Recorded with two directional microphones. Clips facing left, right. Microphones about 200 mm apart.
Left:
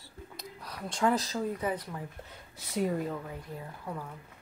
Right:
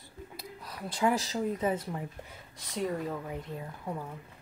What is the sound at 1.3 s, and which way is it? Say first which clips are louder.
Speech: right 2 dB; 20° right (ahead or behind).